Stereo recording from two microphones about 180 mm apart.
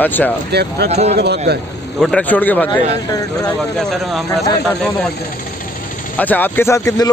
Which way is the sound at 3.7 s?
5° left (ahead or behind).